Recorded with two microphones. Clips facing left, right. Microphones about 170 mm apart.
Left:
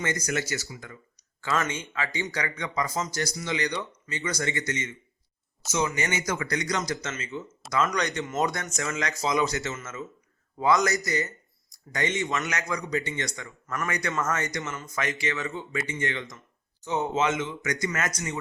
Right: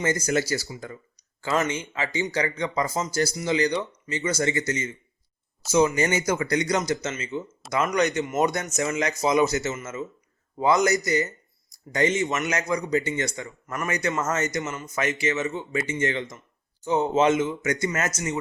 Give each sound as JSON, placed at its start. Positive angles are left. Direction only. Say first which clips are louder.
{"t": 0.0, "sound": "a man's voice", "louder": "right 5 dB", "side_deg": -30}